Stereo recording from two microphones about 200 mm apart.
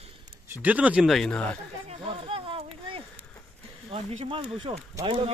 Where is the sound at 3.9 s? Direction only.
30° right (ahead or behind).